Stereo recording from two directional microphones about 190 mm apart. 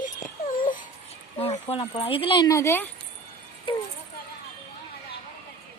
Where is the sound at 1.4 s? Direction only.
35° left (ahead or behind); by 2.9 s 15° left (ahead or behind).